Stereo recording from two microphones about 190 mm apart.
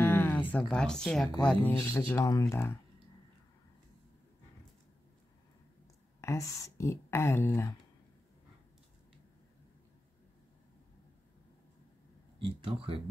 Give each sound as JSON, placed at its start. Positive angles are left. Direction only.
{"t": 0.0, "sound": "a sound", "side_deg": 10}
{"t": 1.4, "sound": "speech", "side_deg": 5}
{"t": 6.2, "sound": "speech", "side_deg": 15}
{"t": 12.4, "sound": "speech", "side_deg": -30}